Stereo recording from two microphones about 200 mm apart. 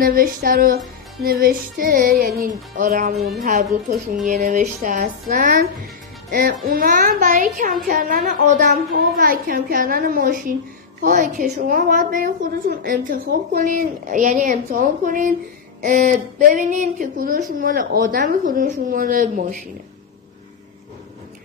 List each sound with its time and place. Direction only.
0.0 s a child's voice: 45° right (ahead or behind)